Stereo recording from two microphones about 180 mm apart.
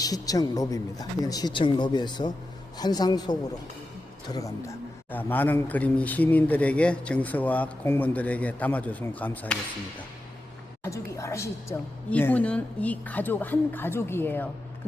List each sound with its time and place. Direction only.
0.0 s a man's voice: 20° left (ahead or behind)
10.8 s a man's voice: 15° left (ahead or behind)